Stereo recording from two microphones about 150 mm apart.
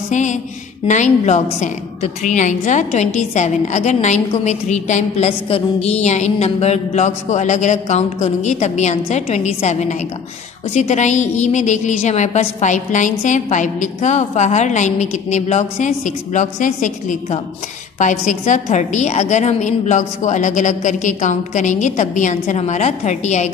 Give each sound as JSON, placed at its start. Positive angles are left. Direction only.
{"t": 0.1, "sound": "music", "side_deg": 55}
{"t": 0.8, "sound": "a woman's voice", "side_deg": 55}